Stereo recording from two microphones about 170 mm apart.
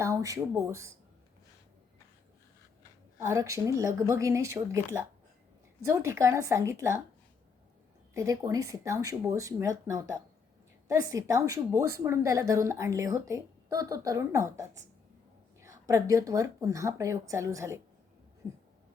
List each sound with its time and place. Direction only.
0.0 s speech: 20° right (ahead or behind)
3.2 s a woman's voice: 15° right (ahead or behind)
8.1 s a woman's voice: 20° right (ahead or behind)